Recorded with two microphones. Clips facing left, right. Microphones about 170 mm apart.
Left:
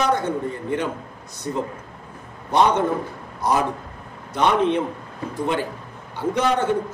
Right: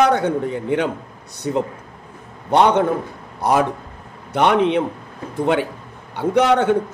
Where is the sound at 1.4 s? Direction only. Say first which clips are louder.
Right 5 dB; 90° right.